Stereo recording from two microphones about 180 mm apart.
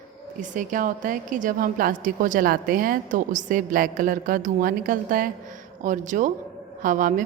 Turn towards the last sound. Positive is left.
turn(degrees=-45)  # may be behind; listen again after turning